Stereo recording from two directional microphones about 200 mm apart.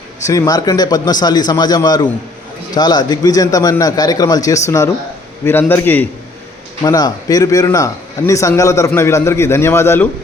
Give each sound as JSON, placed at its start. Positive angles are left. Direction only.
{"t": 0.3, "sound": "a man's voice", "side_deg": 15}